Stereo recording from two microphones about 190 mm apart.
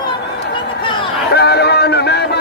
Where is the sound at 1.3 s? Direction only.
60° left (ahead or behind).